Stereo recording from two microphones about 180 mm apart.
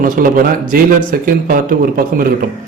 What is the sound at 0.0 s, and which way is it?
A man's voice, 50° right (ahead or behind).